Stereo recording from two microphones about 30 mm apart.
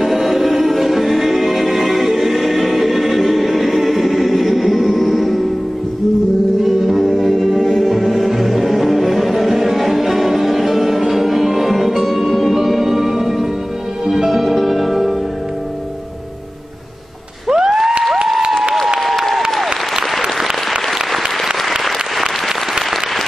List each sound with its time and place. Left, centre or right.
0.0 s music: centre
6.6 s music: centre
14.6 s music: centre
17.5 s a sound: centre
21.6 s applause: centre